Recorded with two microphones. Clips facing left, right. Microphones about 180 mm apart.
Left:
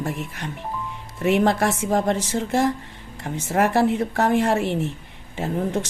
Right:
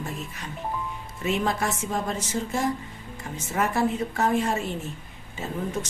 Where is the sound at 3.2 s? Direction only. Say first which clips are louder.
Left 6 dB; 70° left (ahead or behind).